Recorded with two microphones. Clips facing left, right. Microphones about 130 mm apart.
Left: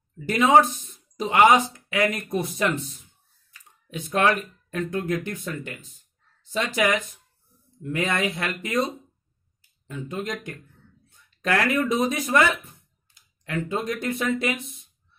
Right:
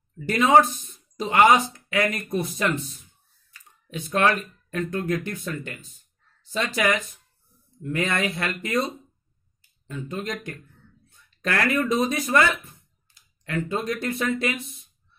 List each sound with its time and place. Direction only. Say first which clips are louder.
0.3 s speech: even; 15° left (ahead or behind)
3.9 s speech: even; 15° left (ahead or behind)
13.7 s speech: left 1 dB; 15° left (ahead or behind)